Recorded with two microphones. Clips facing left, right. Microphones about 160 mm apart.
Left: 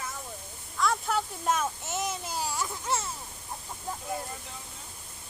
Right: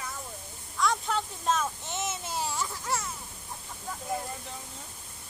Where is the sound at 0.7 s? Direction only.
5° left (ahead or behind).